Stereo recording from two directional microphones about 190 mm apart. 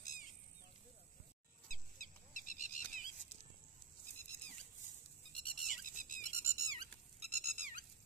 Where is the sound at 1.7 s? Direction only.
45° left (ahead or behind).